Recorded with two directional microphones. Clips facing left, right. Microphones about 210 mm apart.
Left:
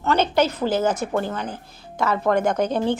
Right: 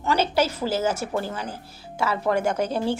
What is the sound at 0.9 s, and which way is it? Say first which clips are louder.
Speech: left 3 dB; 10° right (ahead or behind).